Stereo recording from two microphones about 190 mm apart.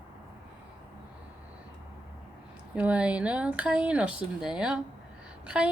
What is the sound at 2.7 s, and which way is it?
Speech, 5° right (ahead or behind).